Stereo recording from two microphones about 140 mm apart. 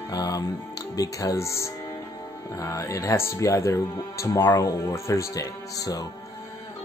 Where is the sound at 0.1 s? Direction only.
25° left (ahead or behind).